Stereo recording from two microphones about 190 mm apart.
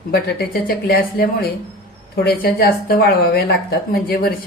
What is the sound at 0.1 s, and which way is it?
A woman's voice, 55° left (ahead or behind).